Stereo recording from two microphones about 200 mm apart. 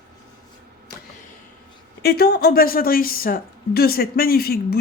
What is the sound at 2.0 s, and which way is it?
Speech, 50° left (ahead or behind).